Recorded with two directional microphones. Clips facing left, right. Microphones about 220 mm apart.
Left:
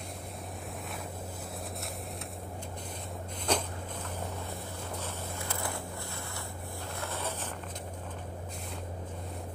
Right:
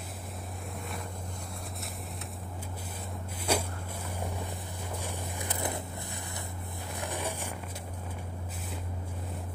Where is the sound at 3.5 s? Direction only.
10° right (ahead or behind).